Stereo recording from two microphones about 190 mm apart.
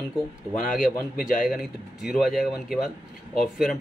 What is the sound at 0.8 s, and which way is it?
Speech, 45° left (ahead or behind).